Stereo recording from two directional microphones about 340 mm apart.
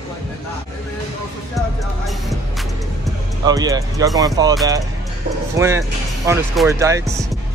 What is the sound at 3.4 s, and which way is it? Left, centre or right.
Speech, centre.